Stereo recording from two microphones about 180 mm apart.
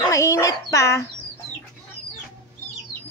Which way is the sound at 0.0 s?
20° left (ahead or behind).